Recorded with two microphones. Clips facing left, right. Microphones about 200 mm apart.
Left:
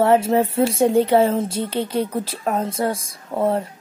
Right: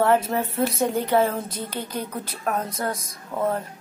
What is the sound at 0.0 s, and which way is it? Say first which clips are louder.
A woman's voice: left 5 dB; 25° left (ahead or behind).